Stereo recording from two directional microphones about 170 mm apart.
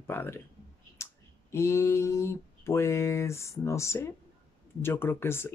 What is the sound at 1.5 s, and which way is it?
Speech, 15° left (ahead or behind).